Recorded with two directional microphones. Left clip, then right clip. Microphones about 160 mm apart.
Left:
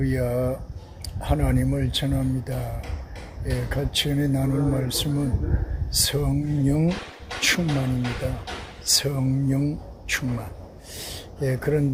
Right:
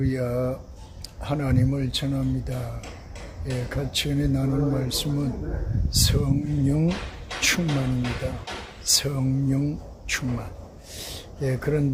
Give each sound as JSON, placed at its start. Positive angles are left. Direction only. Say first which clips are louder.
{"t": 0.0, "sound": "speech", "louder": "left 1 dB", "side_deg": 5}
{"t": 7.3, "sound": "speech", "louder": "left 1 dB", "side_deg": -45}
{"t": 8.8, "sound": "speech", "louder": "left 1 dB", "side_deg": 5}